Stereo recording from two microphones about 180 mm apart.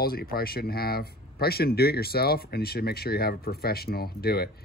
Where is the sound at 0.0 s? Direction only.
55° left (ahead or behind).